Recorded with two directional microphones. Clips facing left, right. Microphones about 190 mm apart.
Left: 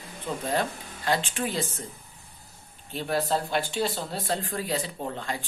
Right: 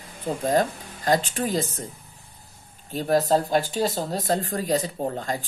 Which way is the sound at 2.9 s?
40° right (ahead or behind).